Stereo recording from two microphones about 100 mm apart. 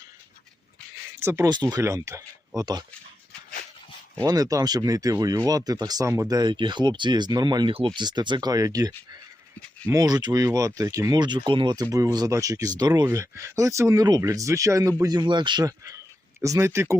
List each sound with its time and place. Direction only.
1.2 s speech: 25° right (ahead or behind)
1.5 s speech: 45° right (ahead or behind)
1.8 s speech: 30° right (ahead or behind)
2.6 s speech: 40° right (ahead or behind)
4.2 s speech: 35° right (ahead or behind)
9.9 s speech: 40° right (ahead or behind)
13.1 s speech: 30° right (ahead or behind); by 15.6 s 50° right (ahead or behind)
15.6 s speech: 35° right (ahead or behind)